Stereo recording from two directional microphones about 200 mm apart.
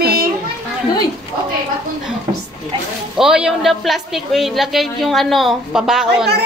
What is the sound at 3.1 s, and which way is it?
A woman's voice, 5° right (ahead or behind).